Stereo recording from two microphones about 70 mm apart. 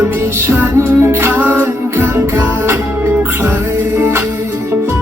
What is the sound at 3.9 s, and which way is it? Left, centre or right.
Music, right.